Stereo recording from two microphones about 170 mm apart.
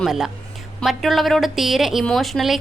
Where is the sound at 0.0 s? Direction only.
Centre (ahead or behind).